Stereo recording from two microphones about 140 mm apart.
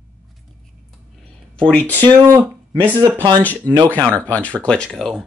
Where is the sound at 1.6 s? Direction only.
10° left (ahead or behind).